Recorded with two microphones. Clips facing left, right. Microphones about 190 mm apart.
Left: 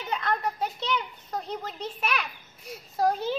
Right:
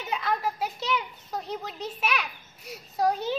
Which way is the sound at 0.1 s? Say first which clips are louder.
Even; 5° right (ahead or behind).